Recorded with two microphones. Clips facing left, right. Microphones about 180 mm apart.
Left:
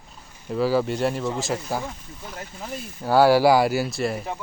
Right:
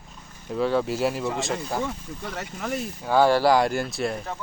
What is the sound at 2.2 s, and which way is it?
Speech, 75° right (ahead or behind).